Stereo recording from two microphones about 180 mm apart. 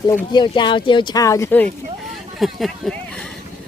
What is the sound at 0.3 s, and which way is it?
Speech, 25° left (ahead or behind).